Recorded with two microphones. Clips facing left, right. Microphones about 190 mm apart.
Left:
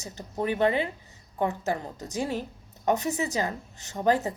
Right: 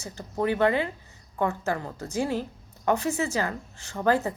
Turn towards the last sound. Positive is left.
turn(degrees=15)  # may be behind; listen again after turning